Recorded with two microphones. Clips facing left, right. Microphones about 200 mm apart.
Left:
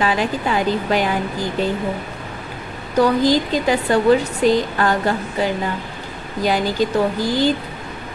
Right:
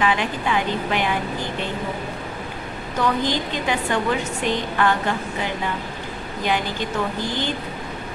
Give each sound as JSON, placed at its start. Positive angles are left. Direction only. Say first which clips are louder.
{"t": 0.0, "sound": "a woman's voice", "louder": "left 3 dB", "side_deg": 40}
{"t": 3.0, "sound": "a woman's voice", "louder": "left 7 dB", "side_deg": 35}